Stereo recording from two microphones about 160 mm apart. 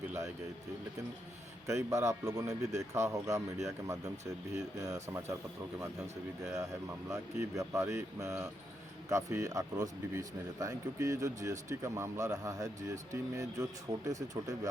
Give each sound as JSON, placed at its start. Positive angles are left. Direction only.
{"t": 1.6, "sound": "speech", "side_deg": -20}
{"t": 6.4, "sound": "speech", "side_deg": -20}